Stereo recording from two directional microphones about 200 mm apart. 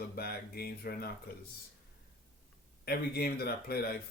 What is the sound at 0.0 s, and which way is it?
Speech, 50° left (ahead or behind).